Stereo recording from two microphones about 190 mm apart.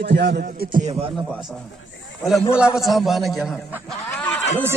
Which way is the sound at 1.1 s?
Centre (ahead or behind).